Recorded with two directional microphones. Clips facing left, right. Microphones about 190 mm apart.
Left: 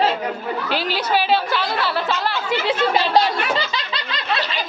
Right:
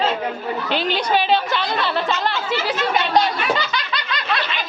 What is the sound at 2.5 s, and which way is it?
Speech, 30° left (ahead or behind).